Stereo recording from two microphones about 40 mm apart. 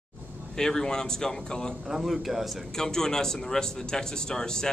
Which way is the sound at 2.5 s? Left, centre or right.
Centre.